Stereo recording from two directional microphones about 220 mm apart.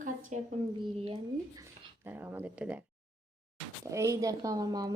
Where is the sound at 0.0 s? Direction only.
35° right (ahead or behind).